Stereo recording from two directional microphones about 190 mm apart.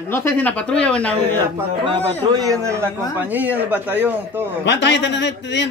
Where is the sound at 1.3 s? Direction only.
25° right (ahead or behind).